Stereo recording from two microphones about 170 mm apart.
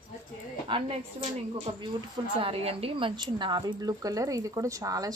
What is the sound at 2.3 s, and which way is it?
A woman's voice, 35° right (ahead or behind).